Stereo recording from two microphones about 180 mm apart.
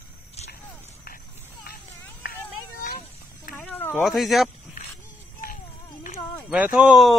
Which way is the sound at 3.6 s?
10° left (ahead or behind).